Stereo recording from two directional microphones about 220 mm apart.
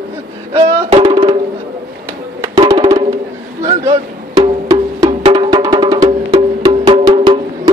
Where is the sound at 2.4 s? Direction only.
20° right (ahead or behind).